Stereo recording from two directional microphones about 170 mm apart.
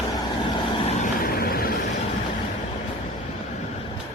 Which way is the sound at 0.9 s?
55° left (ahead or behind).